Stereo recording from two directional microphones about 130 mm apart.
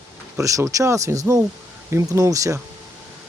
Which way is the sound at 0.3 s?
25° right (ahead or behind).